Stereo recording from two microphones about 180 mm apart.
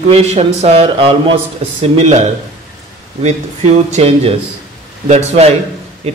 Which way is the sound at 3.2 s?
40° right (ahead or behind).